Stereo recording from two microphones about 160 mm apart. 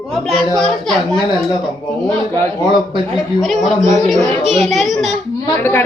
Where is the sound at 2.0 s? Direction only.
10° left (ahead or behind).